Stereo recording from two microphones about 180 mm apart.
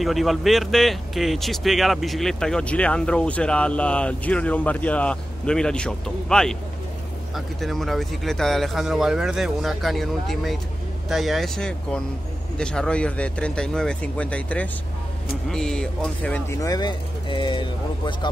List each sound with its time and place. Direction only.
0.0 s speech: centre (ahead or behind); by 18.3 s 25° left (ahead or behind)